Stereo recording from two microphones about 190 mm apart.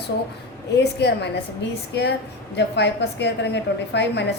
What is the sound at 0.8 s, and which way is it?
Speech, 60° left (ahead or behind).